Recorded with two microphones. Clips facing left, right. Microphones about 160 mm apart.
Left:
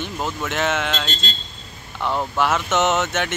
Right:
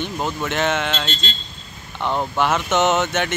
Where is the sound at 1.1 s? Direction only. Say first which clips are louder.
Right 1 dB; 40° left (ahead or behind).